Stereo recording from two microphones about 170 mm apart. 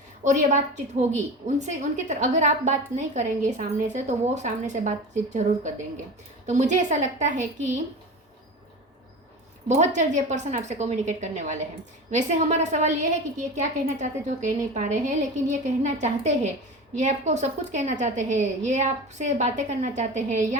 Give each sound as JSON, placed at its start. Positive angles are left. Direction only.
{"t": 0.3, "sound": "a woman's voice", "side_deg": -45}
{"t": 9.6, "sound": "a woman's voice", "side_deg": -45}